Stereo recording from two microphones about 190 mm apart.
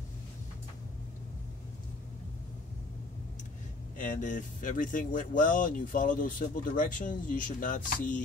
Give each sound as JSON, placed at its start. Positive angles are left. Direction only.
{"t": 4.0, "sound": "speech", "side_deg": 40}